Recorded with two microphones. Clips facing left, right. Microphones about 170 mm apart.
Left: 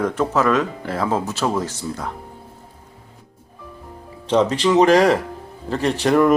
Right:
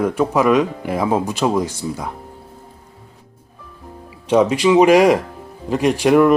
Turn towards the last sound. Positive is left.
turn(degrees=-10)  # may be behind; listen again after turning